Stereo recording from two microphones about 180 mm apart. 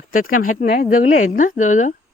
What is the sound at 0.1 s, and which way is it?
Speech, 50° left (ahead or behind).